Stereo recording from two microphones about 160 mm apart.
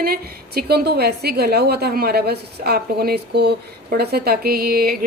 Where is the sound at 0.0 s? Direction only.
75° right (ahead or behind).